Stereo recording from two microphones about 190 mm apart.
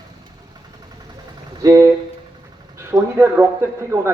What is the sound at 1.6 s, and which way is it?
Speech, 15° right (ahead or behind).